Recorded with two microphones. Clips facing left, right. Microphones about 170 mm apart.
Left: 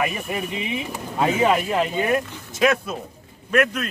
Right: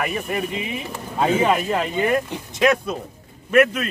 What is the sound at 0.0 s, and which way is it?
Speech, 5° left (ahead or behind).